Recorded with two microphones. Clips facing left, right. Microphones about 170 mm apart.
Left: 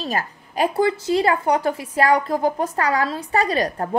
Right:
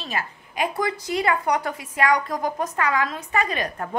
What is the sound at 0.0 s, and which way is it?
A woman's voice, 40° left (ahead or behind).